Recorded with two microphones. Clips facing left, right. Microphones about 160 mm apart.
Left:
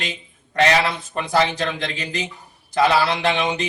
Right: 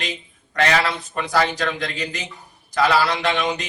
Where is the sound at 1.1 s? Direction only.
25° left (ahead or behind).